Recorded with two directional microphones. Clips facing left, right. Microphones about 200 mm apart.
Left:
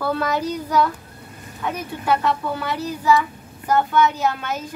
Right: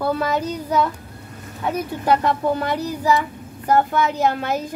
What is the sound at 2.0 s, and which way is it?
Speech, 40° right (ahead or behind).